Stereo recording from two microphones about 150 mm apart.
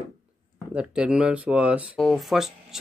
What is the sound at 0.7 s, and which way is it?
Speech, 5° right (ahead or behind).